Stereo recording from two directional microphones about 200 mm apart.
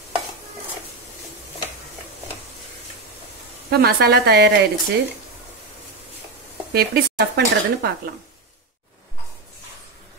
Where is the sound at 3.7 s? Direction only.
50° right (ahead or behind).